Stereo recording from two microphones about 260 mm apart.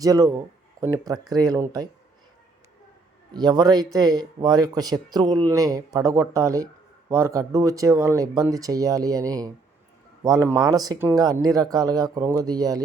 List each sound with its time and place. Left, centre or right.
0.0 s speech: centre
3.3 s speech: centre